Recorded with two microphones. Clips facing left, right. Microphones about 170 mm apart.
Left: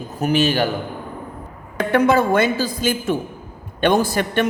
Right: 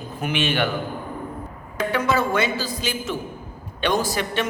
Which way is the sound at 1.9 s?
55° left (ahead or behind).